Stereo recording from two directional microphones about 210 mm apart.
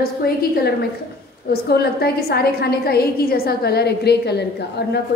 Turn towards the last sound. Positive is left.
turn(degrees=50)  # may be behind; listen again after turning